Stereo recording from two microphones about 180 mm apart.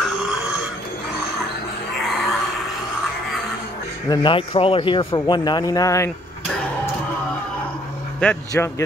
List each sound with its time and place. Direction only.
2.0 s a sound: centre (ahead or behind)
4.1 s a man's voice: 25° left (ahead or behind)
8.2 s speech: 10° left (ahead or behind)